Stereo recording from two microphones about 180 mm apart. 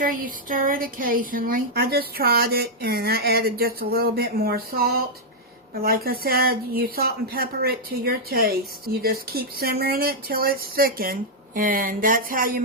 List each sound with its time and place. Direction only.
0.0 s speech: 50° right (ahead or behind)